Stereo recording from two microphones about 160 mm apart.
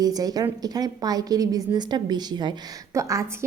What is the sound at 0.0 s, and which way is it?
A woman's voice, 25° right (ahead or behind).